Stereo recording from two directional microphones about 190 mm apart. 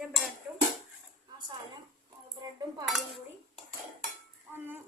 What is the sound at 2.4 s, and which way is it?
Cutlery, 20° right (ahead or behind).